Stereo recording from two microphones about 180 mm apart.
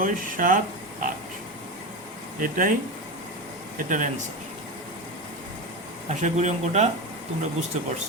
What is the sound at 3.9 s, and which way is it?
Speech, 45° right (ahead or behind).